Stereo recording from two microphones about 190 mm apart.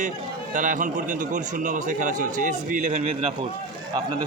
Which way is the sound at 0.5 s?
45° right (ahead or behind).